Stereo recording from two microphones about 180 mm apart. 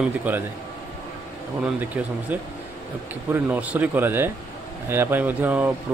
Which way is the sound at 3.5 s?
10° right (ahead or behind).